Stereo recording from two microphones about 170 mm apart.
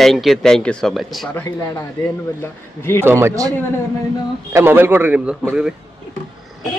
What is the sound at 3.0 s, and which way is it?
A man's voice, 15° right (ahead or behind).